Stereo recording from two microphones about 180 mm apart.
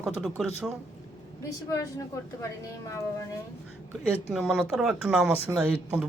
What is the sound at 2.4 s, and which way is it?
Speech, 15° left (ahead or behind).